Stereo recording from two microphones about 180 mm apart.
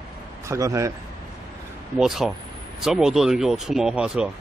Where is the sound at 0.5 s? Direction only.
15° right (ahead or behind).